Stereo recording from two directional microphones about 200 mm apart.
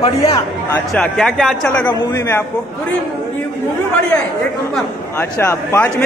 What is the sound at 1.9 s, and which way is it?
Speech, 15° left (ahead or behind).